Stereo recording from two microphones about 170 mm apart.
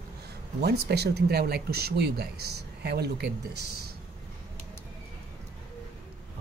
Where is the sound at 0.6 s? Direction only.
70° right (ahead or behind).